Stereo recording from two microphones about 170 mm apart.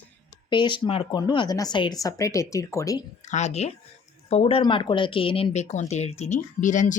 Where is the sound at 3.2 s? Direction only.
45° left (ahead or behind).